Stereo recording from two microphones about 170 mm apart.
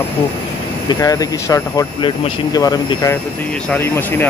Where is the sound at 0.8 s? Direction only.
20° left (ahead or behind).